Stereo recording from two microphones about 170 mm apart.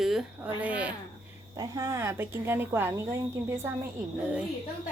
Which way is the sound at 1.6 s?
20° right (ahead or behind).